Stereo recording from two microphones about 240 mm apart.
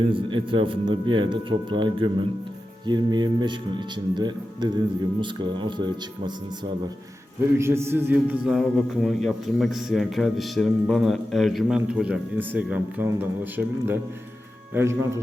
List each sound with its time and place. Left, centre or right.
0.0 s a man's voice: right
7.6 s a man's voice: centre